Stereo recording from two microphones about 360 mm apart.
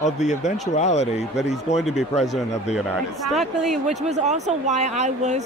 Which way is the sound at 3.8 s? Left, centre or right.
Centre.